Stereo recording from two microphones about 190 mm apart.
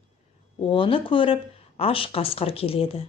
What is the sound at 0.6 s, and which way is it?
Speech, 25° left (ahead or behind).